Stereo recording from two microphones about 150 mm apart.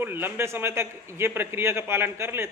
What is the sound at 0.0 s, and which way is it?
A man's voice, 15° right (ahead or behind).